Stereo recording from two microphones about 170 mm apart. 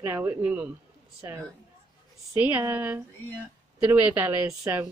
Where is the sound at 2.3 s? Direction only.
10° right (ahead or behind).